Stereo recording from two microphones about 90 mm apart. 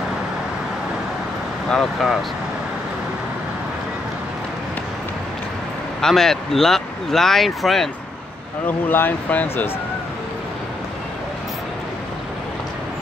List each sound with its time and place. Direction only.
1.7 s speech: 5° left (ahead or behind)
5.9 s speech: 5° left (ahead or behind)
8.6 s speech: 20° left (ahead or behind)